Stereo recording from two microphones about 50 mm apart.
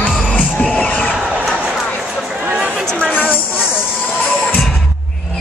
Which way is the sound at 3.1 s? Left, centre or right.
Left.